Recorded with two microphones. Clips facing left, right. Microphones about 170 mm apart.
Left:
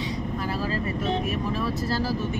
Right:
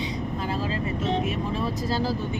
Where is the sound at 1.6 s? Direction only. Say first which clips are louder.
Even; 20° right (ahead or behind).